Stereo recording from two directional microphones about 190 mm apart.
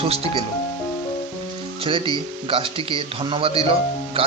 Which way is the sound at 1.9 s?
25° right (ahead or behind).